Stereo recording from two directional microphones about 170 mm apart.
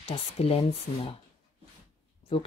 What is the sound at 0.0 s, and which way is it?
Speech, 35° left (ahead or behind).